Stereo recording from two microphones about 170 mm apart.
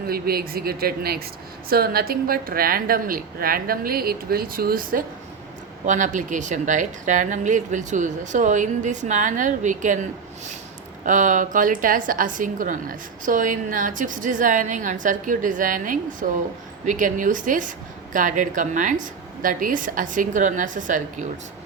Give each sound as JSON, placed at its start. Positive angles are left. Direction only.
{"t": 0.1, "sound": "a woman's voice", "side_deg": -60}
{"t": 11.0, "sound": "a woman's voice", "side_deg": -50}